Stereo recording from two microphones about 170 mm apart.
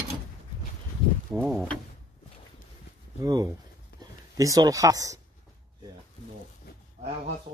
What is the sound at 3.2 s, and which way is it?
Speech, 20° right (ahead or behind).